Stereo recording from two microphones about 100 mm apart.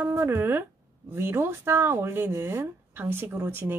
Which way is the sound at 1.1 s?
20° right (ahead or behind).